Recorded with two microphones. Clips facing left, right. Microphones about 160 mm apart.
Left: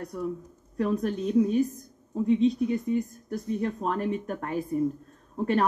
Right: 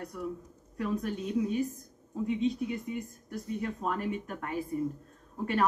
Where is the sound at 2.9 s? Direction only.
35° left (ahead or behind).